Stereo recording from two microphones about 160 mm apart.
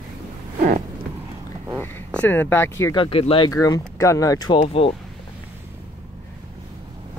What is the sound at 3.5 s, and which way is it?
Speech, 20° left (ahead or behind).